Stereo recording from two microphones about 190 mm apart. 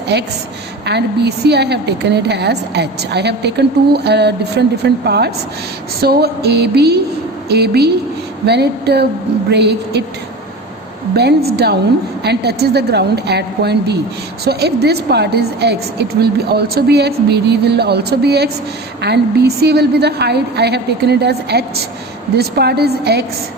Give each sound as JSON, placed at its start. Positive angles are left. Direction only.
{"t": 0.1, "sound": "a woman's voice", "side_deg": -65}
{"t": 11.5, "sound": "a woman's voice", "side_deg": -55}